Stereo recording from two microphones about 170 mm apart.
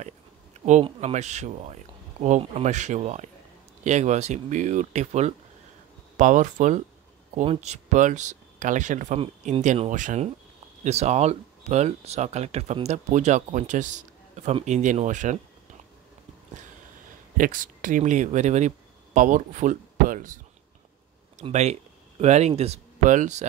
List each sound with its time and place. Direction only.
0.8 s speech: 40° right (ahead or behind)
17.4 s speech: 50° right (ahead or behind)
21.4 s speech: 40° right (ahead or behind)